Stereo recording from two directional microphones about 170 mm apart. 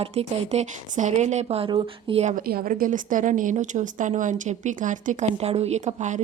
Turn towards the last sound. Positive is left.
turn(degrees=-45)  # may be behind; listen again after turning